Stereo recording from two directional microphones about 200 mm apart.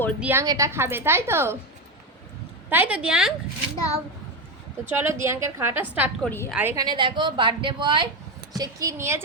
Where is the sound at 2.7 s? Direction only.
10° right (ahead or behind).